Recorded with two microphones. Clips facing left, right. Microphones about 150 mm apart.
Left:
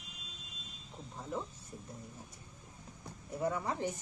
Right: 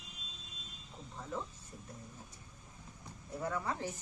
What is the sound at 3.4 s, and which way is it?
Speech, 15° left (ahead or behind).